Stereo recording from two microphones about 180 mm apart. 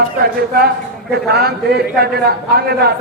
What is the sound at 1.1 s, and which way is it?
A man's voice, 65° right (ahead or behind).